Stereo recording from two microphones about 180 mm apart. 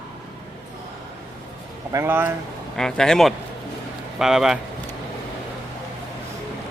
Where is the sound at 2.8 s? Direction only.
5° left (ahead or behind).